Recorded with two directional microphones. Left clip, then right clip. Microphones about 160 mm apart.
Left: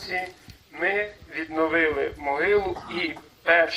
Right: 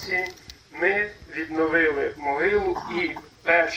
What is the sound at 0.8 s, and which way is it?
A man's voice, 25° left (ahead or behind).